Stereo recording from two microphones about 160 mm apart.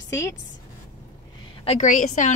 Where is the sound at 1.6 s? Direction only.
50° left (ahead or behind).